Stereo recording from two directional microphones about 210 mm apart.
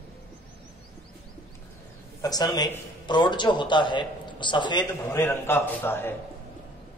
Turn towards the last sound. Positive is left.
turn(degrees=10)  # may be behind; listen again after turning